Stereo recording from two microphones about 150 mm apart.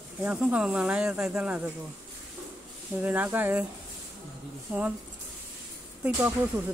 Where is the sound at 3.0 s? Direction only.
10° right (ahead or behind).